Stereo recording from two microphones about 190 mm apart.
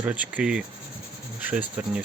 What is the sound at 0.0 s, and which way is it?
Speech, 10° right (ahead or behind).